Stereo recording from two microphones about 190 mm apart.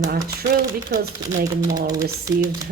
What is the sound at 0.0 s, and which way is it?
A man's voice, 50° right (ahead or behind).